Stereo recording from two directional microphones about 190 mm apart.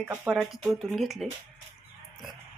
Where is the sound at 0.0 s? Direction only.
5° right (ahead or behind).